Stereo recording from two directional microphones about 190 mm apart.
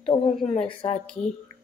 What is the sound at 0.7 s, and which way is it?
Speech, 30° left (ahead or behind).